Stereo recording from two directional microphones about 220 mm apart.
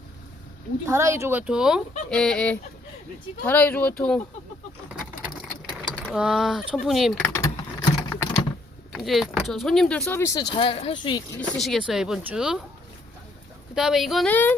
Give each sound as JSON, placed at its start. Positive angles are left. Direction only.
{"t": 0.9, "sound": "speech", "side_deg": -10}
{"t": 5.6, "sound": "typing", "side_deg": -5}
{"t": 8.9, "sound": "speech", "side_deg": 0}
{"t": 10.5, "sound": "speech", "side_deg": 25}
{"t": 11.3, "sound": "speech", "side_deg": 0}
{"t": 13.7, "sound": "speech", "side_deg": 0}